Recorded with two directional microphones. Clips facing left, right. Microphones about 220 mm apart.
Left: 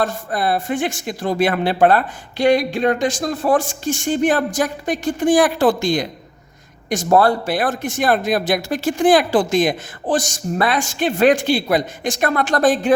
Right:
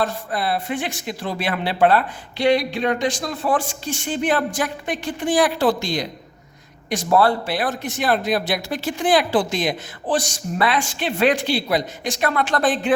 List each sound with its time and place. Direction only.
0.0 s speech: 45° left (ahead or behind)